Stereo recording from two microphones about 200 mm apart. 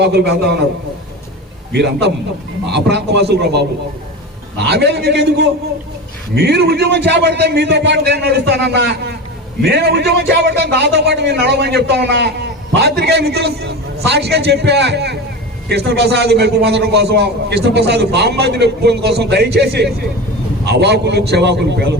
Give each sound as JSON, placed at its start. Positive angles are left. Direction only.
{"t": 0.0, "sound": "a man's voice", "side_deg": -55}
{"t": 1.7, "sound": "a man's voice", "side_deg": -60}